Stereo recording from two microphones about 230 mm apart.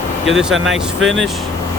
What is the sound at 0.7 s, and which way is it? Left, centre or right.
Speech, right.